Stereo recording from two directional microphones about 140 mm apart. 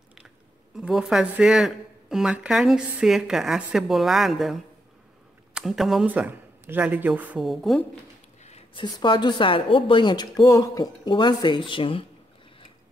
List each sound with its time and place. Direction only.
0.7 s speech: 5° right (ahead or behind)
6.0 s speech: 15° right (ahead or behind)
7.4 s speech: centre (ahead or behind)
8.7 s speech: 35° left (ahead or behind)